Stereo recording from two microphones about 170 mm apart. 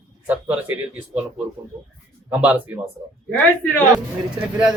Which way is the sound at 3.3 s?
5° left (ahead or behind).